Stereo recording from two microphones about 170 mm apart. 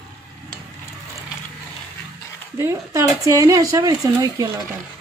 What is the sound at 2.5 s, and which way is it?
A woman's voice, 15° right (ahead or behind).